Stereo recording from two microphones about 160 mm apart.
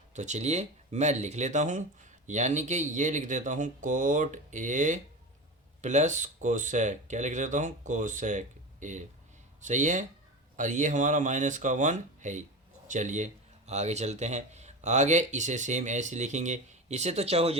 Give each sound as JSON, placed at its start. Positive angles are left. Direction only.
{"t": 0.1, "sound": "speech", "side_deg": -45}